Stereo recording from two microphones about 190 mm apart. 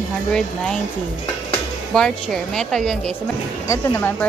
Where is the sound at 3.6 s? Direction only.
15° left (ahead or behind).